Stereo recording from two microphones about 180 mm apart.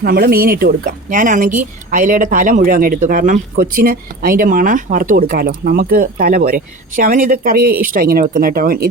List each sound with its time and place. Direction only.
0.0 s speech: 60° right (ahead or behind)